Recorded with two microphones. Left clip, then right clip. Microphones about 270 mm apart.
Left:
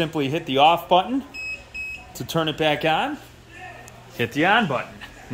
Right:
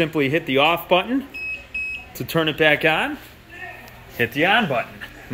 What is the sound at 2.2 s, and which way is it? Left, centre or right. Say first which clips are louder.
Speech: right 4 dB; centre.